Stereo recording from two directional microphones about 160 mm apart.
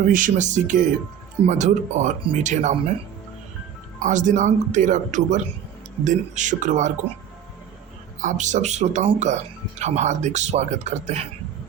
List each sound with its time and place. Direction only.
0.0 s speech: 55° right (ahead or behind)
4.0 s speech: 50° right (ahead or behind)
8.2 s speech: 50° right (ahead or behind)